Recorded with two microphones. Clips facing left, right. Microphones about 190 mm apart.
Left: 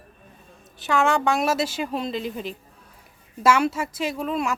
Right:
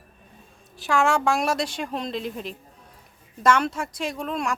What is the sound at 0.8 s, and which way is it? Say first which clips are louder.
Speech: even; centre (ahead or behind).